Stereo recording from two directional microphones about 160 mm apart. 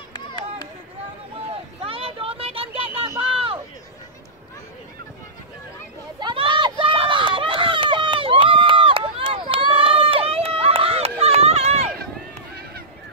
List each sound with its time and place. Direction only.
1.9 s a sound: 35° right (ahead or behind)
3.2 s run: 35° right (ahead or behind)
6.1 s run: 30° right (ahead or behind)